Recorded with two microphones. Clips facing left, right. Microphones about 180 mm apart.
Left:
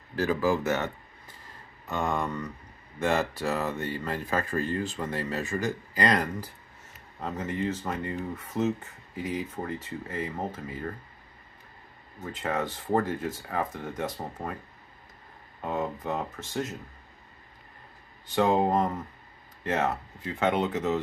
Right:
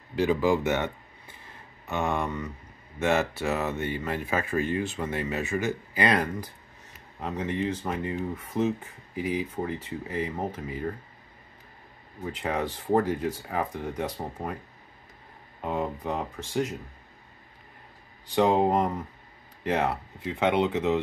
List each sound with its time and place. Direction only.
0.1 s speech: 15° right (ahead or behind)
1.9 s speech: 10° right (ahead or behind)
12.4 s speech: 10° right (ahead or behind)
15.6 s speech: 10° right (ahead or behind)
18.2 s speech: 15° right (ahead or behind)